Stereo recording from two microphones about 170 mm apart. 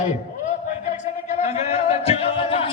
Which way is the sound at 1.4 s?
40° left (ahead or behind).